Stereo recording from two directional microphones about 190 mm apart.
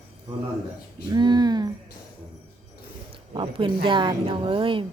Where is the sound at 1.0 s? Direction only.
20° right (ahead or behind).